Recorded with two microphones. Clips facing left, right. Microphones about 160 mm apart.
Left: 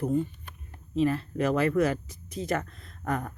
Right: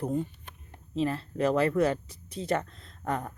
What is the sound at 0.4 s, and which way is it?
Speech, 25° right (ahead or behind).